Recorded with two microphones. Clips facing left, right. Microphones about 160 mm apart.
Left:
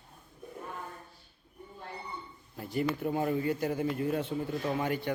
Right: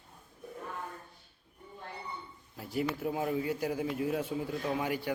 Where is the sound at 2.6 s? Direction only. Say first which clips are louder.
Left 2 dB; 5° right (ahead or behind).